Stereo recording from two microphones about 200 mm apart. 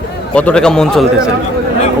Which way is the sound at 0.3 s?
5° left (ahead or behind).